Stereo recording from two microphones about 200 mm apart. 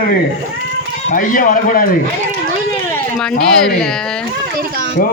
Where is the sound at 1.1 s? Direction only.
40° left (ahead or behind).